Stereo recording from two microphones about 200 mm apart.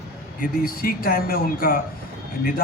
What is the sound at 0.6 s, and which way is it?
A man's voice, 45° left (ahead or behind).